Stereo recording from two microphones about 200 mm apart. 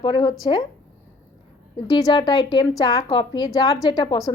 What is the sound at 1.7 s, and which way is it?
A woman's voice, 20° left (ahead or behind).